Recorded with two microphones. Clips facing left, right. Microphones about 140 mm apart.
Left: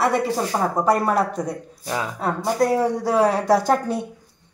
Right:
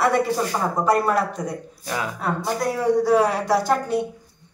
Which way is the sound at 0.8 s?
45° left (ahead or behind).